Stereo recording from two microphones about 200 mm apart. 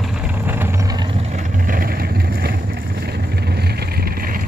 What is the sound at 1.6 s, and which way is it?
Vehicle, 45° right (ahead or behind).